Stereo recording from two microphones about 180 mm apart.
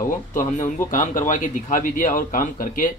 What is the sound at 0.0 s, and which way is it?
Speech, 45° left (ahead or behind).